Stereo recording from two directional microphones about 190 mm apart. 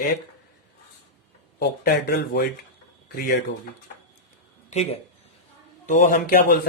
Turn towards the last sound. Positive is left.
turn(degrees=45)  # may be behind; listen again after turning